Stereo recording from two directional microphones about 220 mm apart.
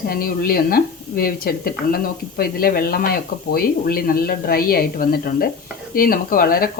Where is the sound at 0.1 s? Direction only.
40° left (ahead or behind).